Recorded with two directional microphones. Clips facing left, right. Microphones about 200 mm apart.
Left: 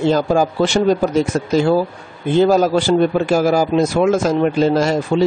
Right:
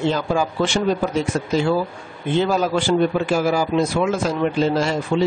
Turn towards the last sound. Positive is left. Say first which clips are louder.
# left 4 dB
turn(degrees=40)  # may be behind; listen again after turning